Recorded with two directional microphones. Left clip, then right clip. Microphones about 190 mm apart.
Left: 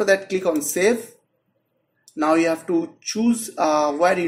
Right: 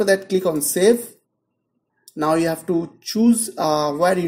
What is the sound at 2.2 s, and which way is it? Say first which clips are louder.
Speech: even; 40° right (ahead or behind).